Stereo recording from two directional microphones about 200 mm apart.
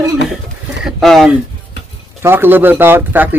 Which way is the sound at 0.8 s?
Centre (ahead or behind).